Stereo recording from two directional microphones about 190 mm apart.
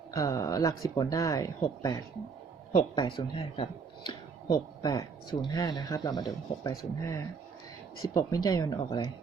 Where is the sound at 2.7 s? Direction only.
30° left (ahead or behind).